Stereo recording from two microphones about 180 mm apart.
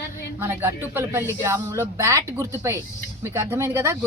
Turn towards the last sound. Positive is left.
turn(degrees=-15)  # may be behind; listen again after turning